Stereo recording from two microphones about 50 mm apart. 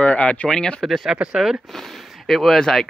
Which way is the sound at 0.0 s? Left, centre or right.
Left.